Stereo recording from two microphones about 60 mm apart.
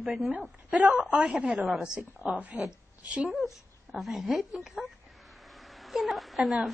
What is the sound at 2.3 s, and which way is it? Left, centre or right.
A woman's voice, right.